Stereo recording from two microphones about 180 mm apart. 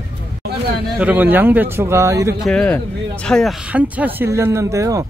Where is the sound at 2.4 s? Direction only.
5° left (ahead or behind).